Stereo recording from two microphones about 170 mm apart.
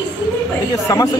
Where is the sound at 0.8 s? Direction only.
20° left (ahead or behind).